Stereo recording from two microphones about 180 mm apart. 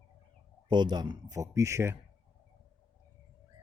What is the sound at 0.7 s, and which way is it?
A man's voice, 25° right (ahead or behind).